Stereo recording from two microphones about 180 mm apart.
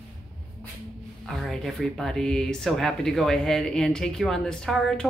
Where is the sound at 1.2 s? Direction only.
Centre (ahead or behind).